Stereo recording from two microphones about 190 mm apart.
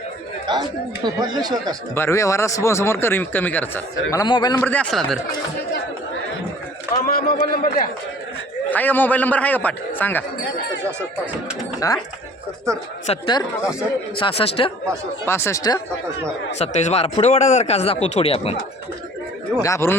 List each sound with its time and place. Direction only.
0.5 s speech: 20° right (ahead or behind)
2.0 s a man's voice: 15° left (ahead or behind)
4.6 s speech: 5° left (ahead or behind)
7.0 s a man's voice: 50° left (ahead or behind)
8.7 s a man's voice: 10° left (ahead or behind)
11.8 s a man's voice: 15° left (ahead or behind)
13.1 s speech: 25° left (ahead or behind)
15.3 s a man's voice: 15° left (ahead or behind)
16.6 s speech: 35° left (ahead or behind)
19.6 s a man's voice: 15° left (ahead or behind)